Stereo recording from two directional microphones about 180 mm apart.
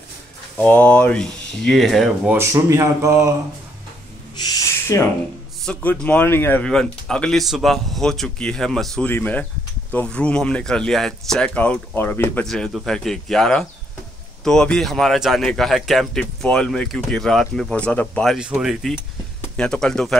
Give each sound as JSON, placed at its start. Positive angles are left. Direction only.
{"t": 0.6, "sound": "speech", "side_deg": 10}
{"t": 2.3, "sound": "speech", "side_deg": -15}
{"t": 4.4, "sound": "owl", "side_deg": 20}
{"t": 5.7, "sound": "speech", "side_deg": 10}